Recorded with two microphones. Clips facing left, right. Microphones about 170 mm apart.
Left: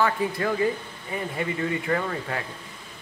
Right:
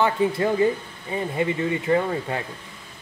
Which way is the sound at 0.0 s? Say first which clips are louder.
Right 3 dB; 25° right (ahead or behind).